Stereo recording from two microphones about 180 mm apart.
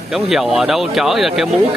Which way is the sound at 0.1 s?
Centre (ahead or behind).